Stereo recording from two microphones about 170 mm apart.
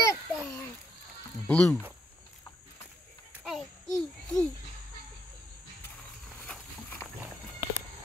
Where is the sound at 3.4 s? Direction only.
Centre (ahead or behind).